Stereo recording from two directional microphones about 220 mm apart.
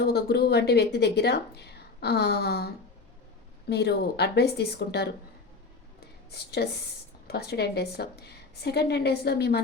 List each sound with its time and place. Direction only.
0.0 s speech: 45° left (ahead or behind)
3.7 s speech: 50° left (ahead or behind)
6.3 s speech: 45° left (ahead or behind)